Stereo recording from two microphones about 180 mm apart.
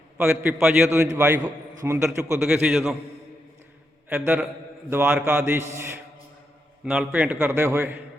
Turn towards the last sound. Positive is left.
turn(degrees=-15)  # may be behind; listen again after turning